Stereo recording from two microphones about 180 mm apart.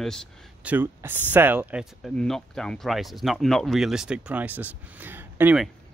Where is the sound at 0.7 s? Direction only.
10° right (ahead or behind).